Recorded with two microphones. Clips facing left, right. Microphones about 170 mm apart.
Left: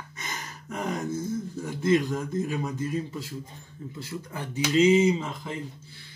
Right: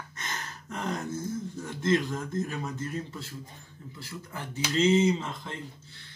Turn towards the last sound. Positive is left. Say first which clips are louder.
# left 2 dB
turn(degrees=10)  # may be behind; listen again after turning